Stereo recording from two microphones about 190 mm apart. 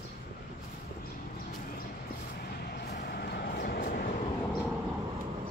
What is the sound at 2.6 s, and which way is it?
Vehicle, 55° left (ahead or behind).